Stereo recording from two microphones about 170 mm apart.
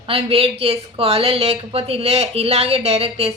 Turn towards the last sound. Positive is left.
turn(degrees=-35)  # may be behind; listen again after turning